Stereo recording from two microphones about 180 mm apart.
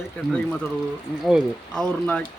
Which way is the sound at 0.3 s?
5° left (ahead or behind).